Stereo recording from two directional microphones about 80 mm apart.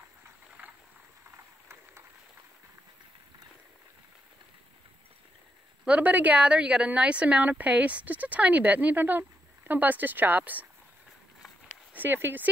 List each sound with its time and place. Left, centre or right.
5.9 s speech: centre
11.9 s speech: right